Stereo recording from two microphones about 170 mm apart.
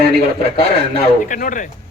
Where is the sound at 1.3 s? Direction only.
50° left (ahead or behind).